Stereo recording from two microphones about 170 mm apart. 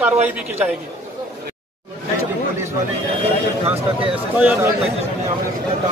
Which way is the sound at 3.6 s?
35° right (ahead or behind).